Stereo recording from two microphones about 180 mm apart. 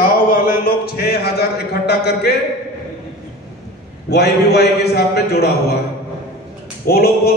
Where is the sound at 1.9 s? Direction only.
65° left (ahead or behind).